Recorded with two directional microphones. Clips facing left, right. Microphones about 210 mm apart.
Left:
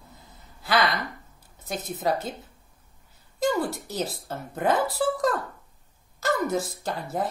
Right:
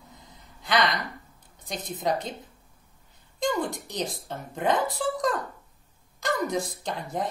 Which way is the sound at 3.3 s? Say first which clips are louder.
Left 2 dB; centre (ahead or behind).